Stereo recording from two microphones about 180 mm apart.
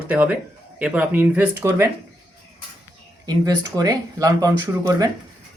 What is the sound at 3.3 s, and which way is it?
Speech, 20° right (ahead or behind).